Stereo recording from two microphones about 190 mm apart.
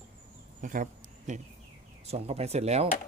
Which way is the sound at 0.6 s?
45° right (ahead or behind).